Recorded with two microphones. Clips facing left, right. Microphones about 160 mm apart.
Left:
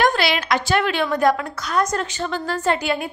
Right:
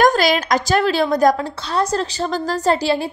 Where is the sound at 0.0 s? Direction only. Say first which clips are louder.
Right 4 dB; 40° right (ahead or behind).